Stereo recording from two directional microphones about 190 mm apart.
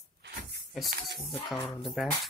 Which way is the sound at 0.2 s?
60° right (ahead or behind).